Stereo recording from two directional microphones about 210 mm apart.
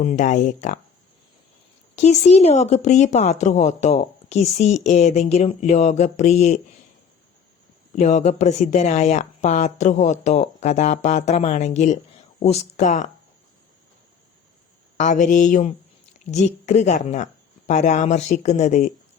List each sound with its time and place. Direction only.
0.0 s speech: 35° left (ahead or behind)
2.0 s speech: 30° left (ahead or behind)
7.9 s speech: 35° left (ahead or behind)
14.9 s a woman's voice: 35° left (ahead or behind)